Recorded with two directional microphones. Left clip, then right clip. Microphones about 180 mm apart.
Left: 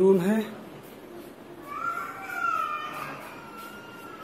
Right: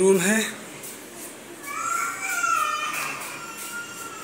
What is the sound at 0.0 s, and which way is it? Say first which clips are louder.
Speech: right 2 dB; 20° left (ahead or behind).